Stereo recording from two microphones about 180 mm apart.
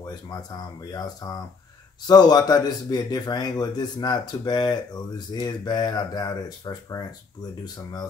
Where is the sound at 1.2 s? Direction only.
20° left (ahead or behind).